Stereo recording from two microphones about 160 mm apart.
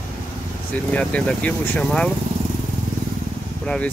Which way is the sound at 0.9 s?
10° left (ahead or behind).